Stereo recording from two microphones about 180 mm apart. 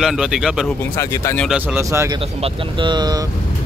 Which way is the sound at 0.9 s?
15° left (ahead or behind).